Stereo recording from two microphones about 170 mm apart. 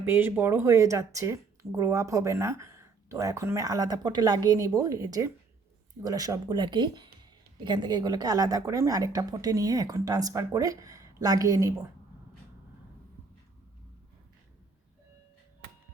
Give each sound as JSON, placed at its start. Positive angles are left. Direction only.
{"t": 0.0, "sound": "a woman's voice", "side_deg": -15}